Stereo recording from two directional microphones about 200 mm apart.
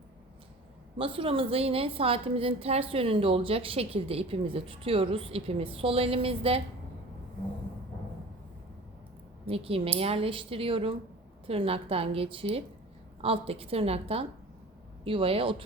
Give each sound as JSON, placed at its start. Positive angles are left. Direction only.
{"t": 0.9, "sound": "a woman's voice", "side_deg": -25}
{"t": 9.5, "sound": "a woman's voice", "side_deg": -30}